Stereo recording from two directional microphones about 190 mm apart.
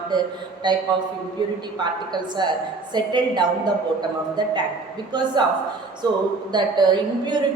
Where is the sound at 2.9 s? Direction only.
25° right (ahead or behind).